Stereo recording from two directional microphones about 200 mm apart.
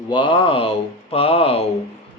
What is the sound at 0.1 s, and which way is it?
Speech, 25° left (ahead or behind).